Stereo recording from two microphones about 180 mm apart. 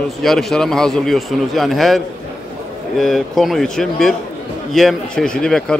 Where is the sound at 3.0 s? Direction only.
Centre (ahead or behind).